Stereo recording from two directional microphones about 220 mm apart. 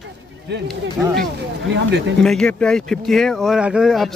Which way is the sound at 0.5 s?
50° right (ahead or behind).